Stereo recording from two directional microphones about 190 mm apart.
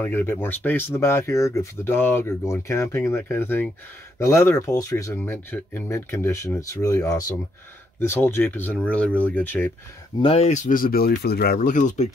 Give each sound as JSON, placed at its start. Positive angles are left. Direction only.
{"t": 0.0, "sound": "speech", "side_deg": 10}
{"t": 10.2, "sound": "speech", "side_deg": 35}